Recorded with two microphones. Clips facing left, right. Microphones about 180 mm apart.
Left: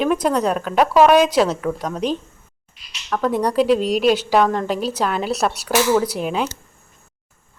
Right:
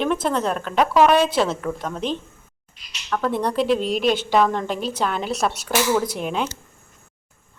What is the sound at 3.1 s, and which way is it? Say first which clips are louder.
A woman's voice: left 4 dB; 10° left (ahead or behind).